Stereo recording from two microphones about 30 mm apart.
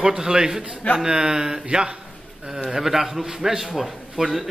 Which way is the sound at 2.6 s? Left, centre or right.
Centre.